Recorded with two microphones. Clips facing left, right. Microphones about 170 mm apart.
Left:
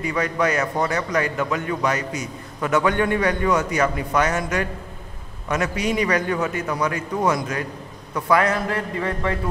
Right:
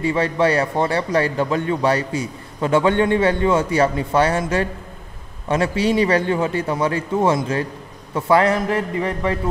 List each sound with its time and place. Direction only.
0.0 s a man's voice: 30° right (ahead or behind)